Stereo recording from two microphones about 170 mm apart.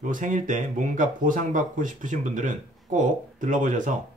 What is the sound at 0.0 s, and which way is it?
Speech, 50° right (ahead or behind).